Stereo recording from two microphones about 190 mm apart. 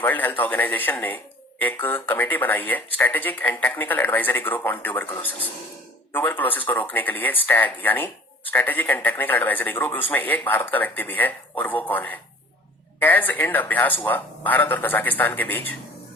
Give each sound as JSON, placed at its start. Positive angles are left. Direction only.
{"t": 0.0, "sound": "speech", "side_deg": 10}